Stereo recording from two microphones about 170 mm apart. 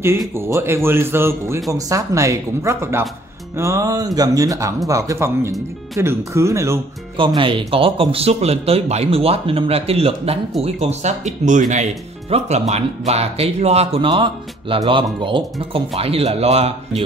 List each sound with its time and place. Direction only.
0.3 s speech: 15° right (ahead or behind)
7.2 s speech: 30° right (ahead or behind)